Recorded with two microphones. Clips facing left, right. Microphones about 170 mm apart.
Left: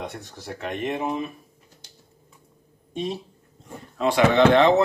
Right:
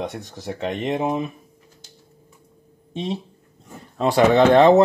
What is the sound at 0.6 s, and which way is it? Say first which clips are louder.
Speech: right 4 dB; 25° right (ahead or behind).